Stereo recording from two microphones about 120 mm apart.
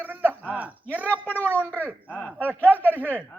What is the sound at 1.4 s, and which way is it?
Speech, 10° left (ahead or behind).